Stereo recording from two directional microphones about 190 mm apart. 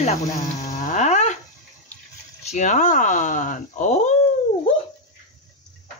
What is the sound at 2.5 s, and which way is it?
A woman's voice, 40° left (ahead or behind).